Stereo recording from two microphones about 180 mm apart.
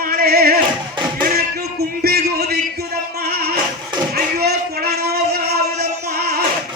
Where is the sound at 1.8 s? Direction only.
60° right (ahead or behind).